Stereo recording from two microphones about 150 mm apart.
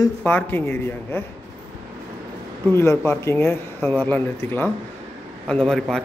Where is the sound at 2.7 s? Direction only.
15° left (ahead or behind).